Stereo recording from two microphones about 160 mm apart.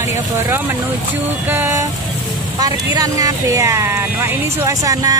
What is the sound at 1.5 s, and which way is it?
Speech, 15° right (ahead or behind).